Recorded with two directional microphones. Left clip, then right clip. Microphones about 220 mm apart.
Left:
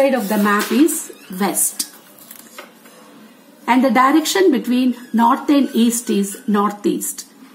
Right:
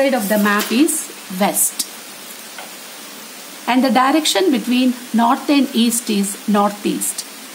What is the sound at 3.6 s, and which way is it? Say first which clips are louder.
Speech: left 1 dB; 25° right (ahead or behind).